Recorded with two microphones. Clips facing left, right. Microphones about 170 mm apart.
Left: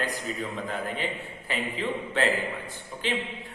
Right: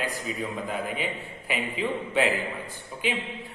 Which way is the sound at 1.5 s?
10° right (ahead or behind).